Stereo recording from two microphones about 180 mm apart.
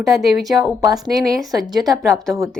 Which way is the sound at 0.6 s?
20° right (ahead or behind).